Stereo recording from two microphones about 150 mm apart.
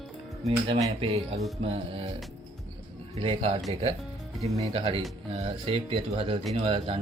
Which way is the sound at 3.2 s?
35° right (ahead or behind).